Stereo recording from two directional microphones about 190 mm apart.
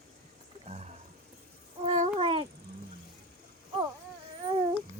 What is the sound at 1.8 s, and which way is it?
Babbling, 30° right (ahead or behind).